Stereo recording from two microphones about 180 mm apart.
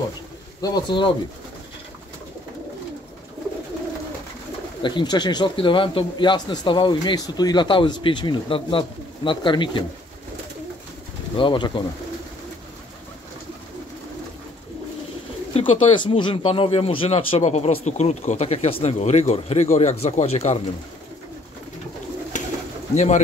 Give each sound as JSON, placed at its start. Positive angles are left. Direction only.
{"t": 0.6, "sound": "speech", "side_deg": 20}
{"t": 4.8, "sound": "speech", "side_deg": 25}
{"t": 11.3, "sound": "speech", "side_deg": 25}
{"t": 15.5, "sound": "speech", "side_deg": 30}
{"t": 22.3, "sound": "pigeon", "side_deg": 45}
{"t": 22.9, "sound": "speech", "side_deg": 40}